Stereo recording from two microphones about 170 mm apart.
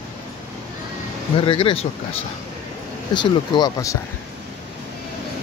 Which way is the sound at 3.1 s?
25° left (ahead or behind).